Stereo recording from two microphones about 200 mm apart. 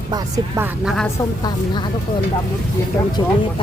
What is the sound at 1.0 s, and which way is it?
Speech, 20° left (ahead or behind).